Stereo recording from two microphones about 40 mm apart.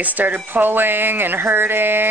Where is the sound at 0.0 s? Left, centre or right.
Right.